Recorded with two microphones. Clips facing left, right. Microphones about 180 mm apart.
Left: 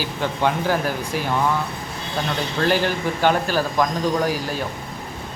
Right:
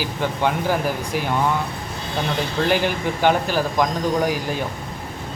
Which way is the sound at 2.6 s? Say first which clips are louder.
Left 1 dB; 15° right (ahead or behind).